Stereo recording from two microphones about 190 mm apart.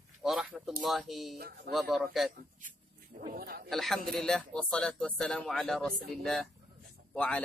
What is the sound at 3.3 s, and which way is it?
Speech, 50° right (ahead or behind).